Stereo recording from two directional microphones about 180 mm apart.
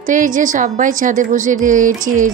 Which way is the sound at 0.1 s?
45° right (ahead or behind).